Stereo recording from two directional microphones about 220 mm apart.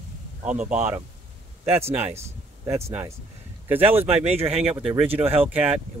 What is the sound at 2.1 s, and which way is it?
Speech, 15° right (ahead or behind).